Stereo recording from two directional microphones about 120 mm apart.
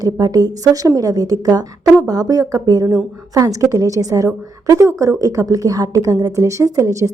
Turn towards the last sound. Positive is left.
turn(degrees=-25)  # may be behind; listen again after turning